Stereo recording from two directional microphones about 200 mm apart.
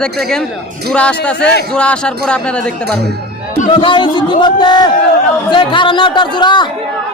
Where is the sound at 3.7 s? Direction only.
25° left (ahead or behind).